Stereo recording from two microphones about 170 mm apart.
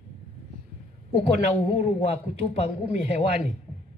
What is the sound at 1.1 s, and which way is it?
A man's voice, 45° left (ahead or behind).